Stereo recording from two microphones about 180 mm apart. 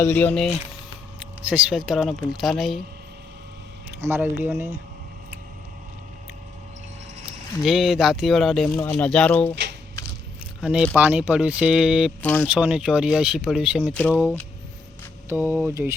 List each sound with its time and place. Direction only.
0.0 s speech: 10° left (ahead or behind)
1.2 s a sound: 5° right (ahead or behind)
1.9 s speech: centre (ahead or behind)
4.0 s speech: 10° right (ahead or behind)
7.6 s speech: centre (ahead or behind)
10.6 s speech: 5° right (ahead or behind)
12.2 s speech: 10° left (ahead or behind)
12.5 s speech: 5° right (ahead or behind)
15.3 s speech: 10° right (ahead or behind)